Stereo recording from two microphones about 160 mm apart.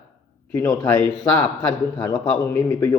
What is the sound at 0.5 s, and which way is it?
A man's voice, 10° left (ahead or behind).